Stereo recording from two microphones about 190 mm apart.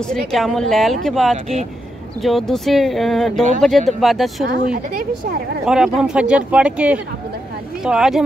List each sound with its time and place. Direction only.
0.0 s speech: 5° left (ahead or behind)
1.3 s speech: 35° right (ahead or behind)
2.2 s speech: centre (ahead or behind)
4.7 s speech: 50° right (ahead or behind)
5.7 s speech: 5° right (ahead or behind)